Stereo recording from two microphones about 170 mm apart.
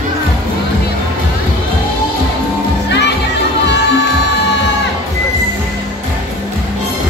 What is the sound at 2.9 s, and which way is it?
Music, 90° left.